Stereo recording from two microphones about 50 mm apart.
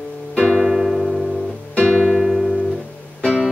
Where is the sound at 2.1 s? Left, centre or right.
Centre.